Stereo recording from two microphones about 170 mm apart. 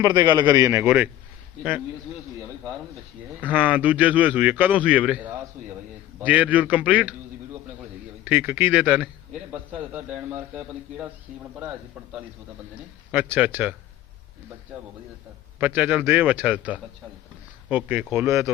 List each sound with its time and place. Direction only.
0.0 s a man's voice: 25° right (ahead or behind); by 1.1 s 10° right (ahead or behind)
3.5 s a man's voice: 10° right (ahead or behind)
8.2 s a man's voice: 10° right (ahead or behind)
13.1 s a man's voice: 10° right (ahead or behind)
15.6 s a man's voice: 10° right (ahead or behind)